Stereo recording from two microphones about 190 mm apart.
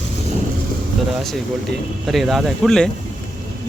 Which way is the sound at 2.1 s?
Centre (ahead or behind).